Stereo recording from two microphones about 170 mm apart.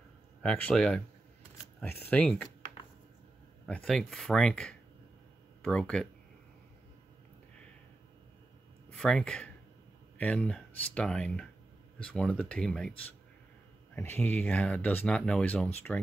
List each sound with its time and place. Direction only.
0.4 s speech: 5° left (ahead or behind)
3.6 s speech: 5° left (ahead or behind)
8.9 s speech: 5° left (ahead or behind)
13.9 s speech: 10° left (ahead or behind)